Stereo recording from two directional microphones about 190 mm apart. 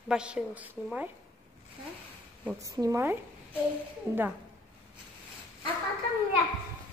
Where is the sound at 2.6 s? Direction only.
20° right (ahead or behind).